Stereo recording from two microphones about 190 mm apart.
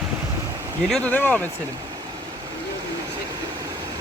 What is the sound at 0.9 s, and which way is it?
Speech, 5° left (ahead or behind).